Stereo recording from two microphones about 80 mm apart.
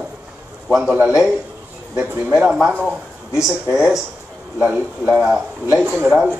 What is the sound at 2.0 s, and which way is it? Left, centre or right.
Speech, centre.